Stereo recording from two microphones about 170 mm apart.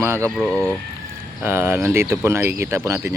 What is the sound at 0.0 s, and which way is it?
Speech, 15° right (ahead or behind).